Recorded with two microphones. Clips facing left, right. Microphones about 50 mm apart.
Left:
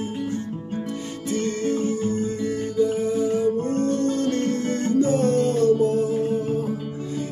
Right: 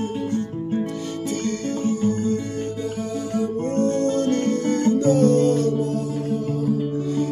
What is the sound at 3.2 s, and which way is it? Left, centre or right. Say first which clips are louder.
Music: left 3 dB; centre.